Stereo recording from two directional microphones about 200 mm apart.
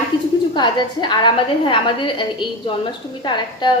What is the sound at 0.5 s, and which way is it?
A woman's voice, 20° left (ahead or behind).